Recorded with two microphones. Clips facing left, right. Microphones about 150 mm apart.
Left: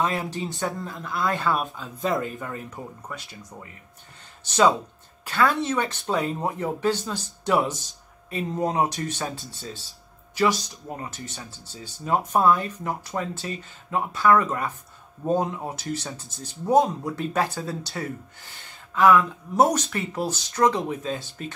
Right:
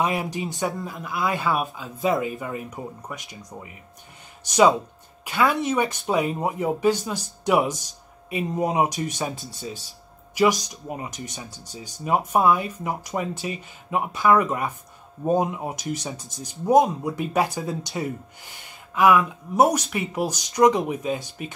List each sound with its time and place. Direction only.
0.0 s speech: 15° right (ahead or behind)